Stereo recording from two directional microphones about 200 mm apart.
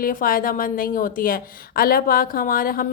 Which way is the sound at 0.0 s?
45° left (ahead or behind).